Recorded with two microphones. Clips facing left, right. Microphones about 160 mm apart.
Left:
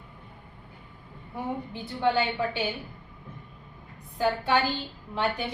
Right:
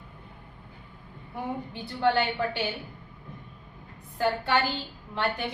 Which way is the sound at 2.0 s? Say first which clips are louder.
Even; 15° left (ahead or behind).